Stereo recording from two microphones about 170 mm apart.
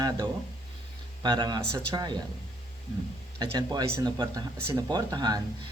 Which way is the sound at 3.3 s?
25° right (ahead or behind).